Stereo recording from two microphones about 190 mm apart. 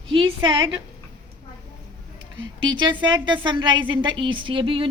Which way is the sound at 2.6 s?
25° right (ahead or behind).